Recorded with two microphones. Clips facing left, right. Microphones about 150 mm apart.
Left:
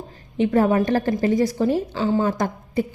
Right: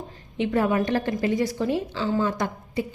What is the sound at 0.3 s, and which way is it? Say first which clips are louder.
A woman's voice: left 4 dB; 40° left (ahead or behind).